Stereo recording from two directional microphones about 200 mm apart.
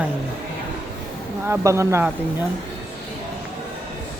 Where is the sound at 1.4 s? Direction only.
15° right (ahead or behind).